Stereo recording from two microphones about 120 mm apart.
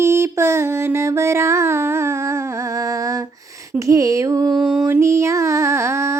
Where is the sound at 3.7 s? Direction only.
25° right (ahead or behind).